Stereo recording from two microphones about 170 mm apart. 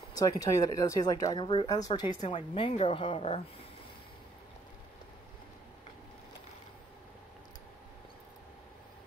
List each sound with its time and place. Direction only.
0.2 s speech: 20° left (ahead or behind)
2.2 s a woman's voice: 35° left (ahead or behind)